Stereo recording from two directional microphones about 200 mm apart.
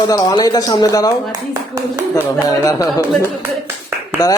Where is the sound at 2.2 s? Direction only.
15° left (ahead or behind).